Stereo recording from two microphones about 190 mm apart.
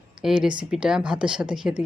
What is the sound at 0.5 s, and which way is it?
Speech, 5° right (ahead or behind).